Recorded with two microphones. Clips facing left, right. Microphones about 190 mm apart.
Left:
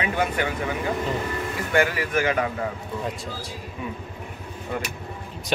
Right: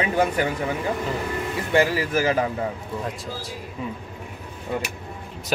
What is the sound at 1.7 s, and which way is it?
Speech, 30° right (ahead or behind).